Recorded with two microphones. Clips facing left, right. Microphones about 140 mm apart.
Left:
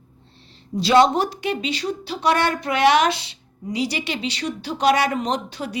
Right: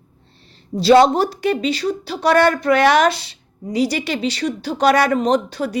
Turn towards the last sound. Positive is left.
turn(degrees=-40)  # may be behind; listen again after turning